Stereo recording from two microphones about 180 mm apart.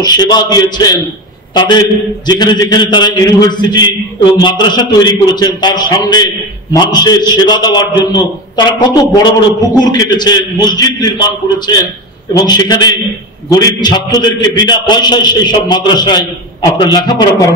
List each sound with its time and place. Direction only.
0.0 s a man's voice: 20° left (ahead or behind)